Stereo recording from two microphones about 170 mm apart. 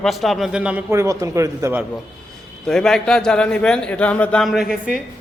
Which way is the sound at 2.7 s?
5° left (ahead or behind).